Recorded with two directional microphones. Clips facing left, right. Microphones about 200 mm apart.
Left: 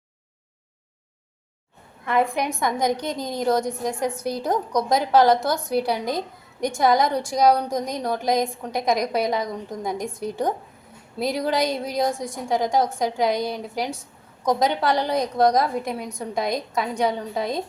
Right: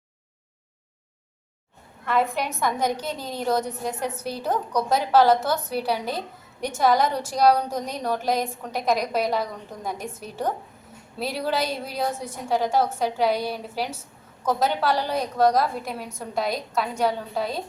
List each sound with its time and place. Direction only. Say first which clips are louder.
2.0 s a woman's voice: left 2 dB; 15° left (ahead or behind)
5.7 s a woman's voice: left 6 dB; 10° right (ahead or behind)
6.7 s a woman's voice: left 1 dB; 15° left (ahead or behind)
13.4 s a woman's voice: left 2 dB; 5° right (ahead or behind)
14.4 s a woman's voice: left 2 dB; 15° left (ahead or behind)